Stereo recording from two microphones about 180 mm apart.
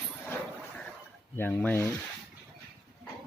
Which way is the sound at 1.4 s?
10° left (ahead or behind).